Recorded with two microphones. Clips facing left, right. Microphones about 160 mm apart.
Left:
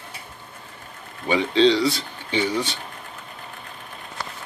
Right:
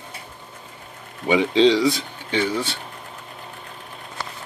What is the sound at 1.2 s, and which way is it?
Speech, 15° right (ahead or behind).